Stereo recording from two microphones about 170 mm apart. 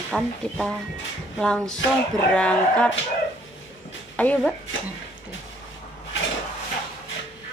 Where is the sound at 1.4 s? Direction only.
5° left (ahead or behind).